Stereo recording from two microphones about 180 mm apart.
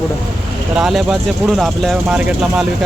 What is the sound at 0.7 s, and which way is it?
Speech, 5° right (ahead or behind).